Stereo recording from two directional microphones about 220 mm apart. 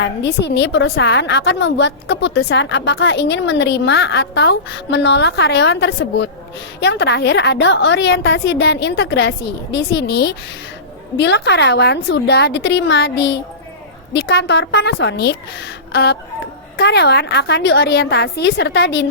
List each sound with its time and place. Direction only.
0.0 s a woman's voice: 50° left (ahead or behind)